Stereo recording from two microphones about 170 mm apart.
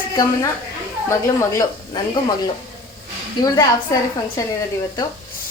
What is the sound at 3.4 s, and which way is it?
A woman's voice, 25° left (ahead or behind).